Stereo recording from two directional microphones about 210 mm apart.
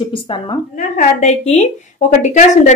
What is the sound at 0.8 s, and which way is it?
A woman's voice, 35° left (ahead or behind).